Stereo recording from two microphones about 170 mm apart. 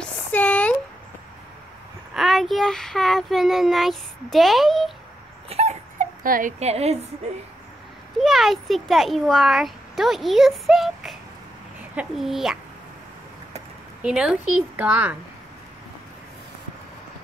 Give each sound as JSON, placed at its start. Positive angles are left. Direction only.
{"t": 0.0, "sound": "a sound", "side_deg": 10}
{"t": 2.1, "sound": "a child's voice", "side_deg": 0}
{"t": 5.5, "sound": "dog", "side_deg": -40}
{"t": 6.2, "sound": "speech", "side_deg": -55}
{"t": 6.6, "sound": "a woman's voice", "side_deg": -40}
{"t": 8.2, "sound": "a child's voice", "side_deg": 0}
{"t": 14.0, "sound": "a woman's voice", "side_deg": -5}